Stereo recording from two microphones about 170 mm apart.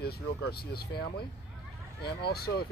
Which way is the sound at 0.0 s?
70° left (ahead or behind).